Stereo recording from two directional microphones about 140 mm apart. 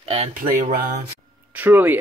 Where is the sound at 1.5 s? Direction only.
15° right (ahead or behind).